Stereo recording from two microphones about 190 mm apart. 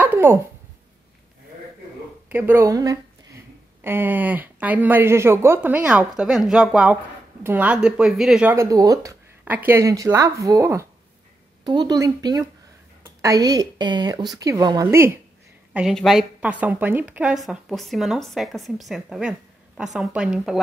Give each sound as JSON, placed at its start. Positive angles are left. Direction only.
{"t": 0.0, "sound": "a sound", "side_deg": -10}
{"t": 2.2, "sound": "a woman's voice", "side_deg": -10}
{"t": 15.7, "sound": "a woman's voice", "side_deg": 0}